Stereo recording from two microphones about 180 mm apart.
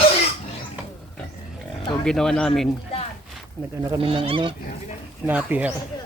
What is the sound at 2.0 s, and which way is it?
Speech, 5° left (ahead or behind).